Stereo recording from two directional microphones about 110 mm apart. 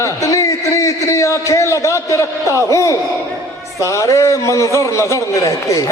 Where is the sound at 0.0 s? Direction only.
30° left (ahead or behind).